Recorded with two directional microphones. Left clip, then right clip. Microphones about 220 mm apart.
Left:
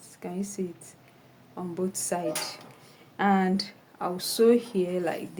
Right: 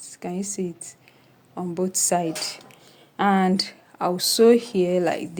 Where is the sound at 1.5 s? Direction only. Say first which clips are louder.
Right 6 dB; 35° right (ahead or behind).